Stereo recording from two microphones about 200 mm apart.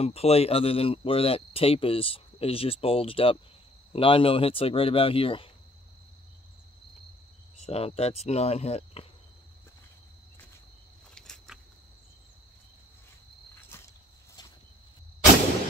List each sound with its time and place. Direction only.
0.0 s speech: 30° left (ahead or behind)
7.6 s speech: 30° left (ahead or behind)
11.1 s a sound: centre (ahead or behind)